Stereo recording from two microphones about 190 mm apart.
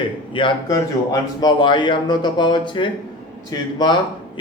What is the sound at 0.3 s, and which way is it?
A man's voice, 25° left (ahead or behind).